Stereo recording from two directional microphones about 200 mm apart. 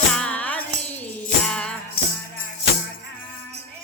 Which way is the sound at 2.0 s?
50° left (ahead or behind).